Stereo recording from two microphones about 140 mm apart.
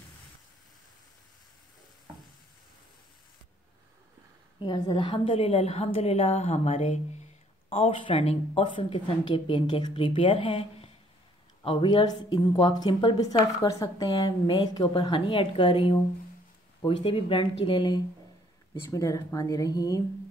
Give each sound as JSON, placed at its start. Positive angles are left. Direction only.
{"t": 4.6, "sound": "a woman's voice", "side_deg": 30}
{"t": 18.7, "sound": "speech", "side_deg": 25}